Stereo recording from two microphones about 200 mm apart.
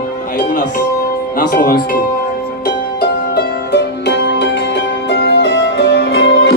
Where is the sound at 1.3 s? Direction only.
45° left (ahead or behind).